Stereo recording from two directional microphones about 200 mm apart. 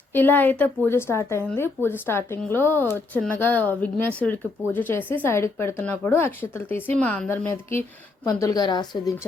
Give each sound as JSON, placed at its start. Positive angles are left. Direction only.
{"t": 0.1, "sound": "a woman's voice", "side_deg": 10}